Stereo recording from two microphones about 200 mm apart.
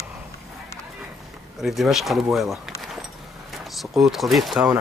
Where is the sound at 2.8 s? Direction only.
Centre (ahead or behind).